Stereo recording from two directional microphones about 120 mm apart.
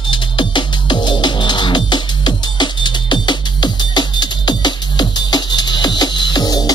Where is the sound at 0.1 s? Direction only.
40° left (ahead or behind).